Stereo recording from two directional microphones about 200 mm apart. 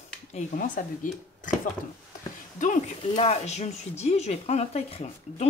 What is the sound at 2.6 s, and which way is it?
Speech, 35° left (ahead or behind).